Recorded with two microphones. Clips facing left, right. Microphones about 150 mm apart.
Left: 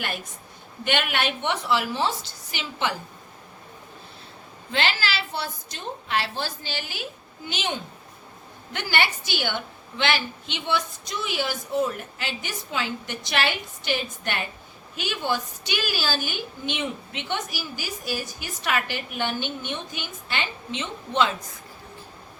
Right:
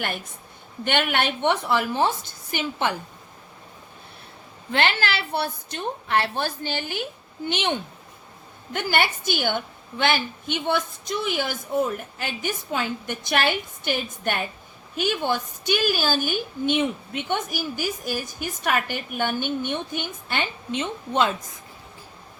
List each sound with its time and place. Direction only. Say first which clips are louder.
0.9 s a woman's voice: right 2 dB; 55° right (ahead or behind)
4.7 s a woman's voice: right 3 dB; 60° right (ahead or behind)
8.7 s a woman's voice: right 2 dB; 50° right (ahead or behind)